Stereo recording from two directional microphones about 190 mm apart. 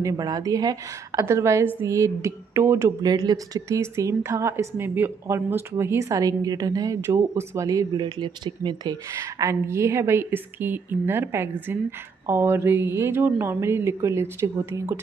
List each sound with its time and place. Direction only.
0.0 s speech: 20° right (ahead or behind)